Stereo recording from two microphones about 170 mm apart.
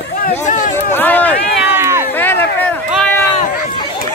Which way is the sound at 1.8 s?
15° right (ahead or behind).